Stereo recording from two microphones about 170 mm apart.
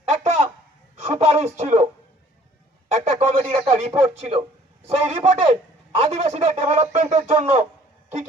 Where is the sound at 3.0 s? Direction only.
35° right (ahead or behind).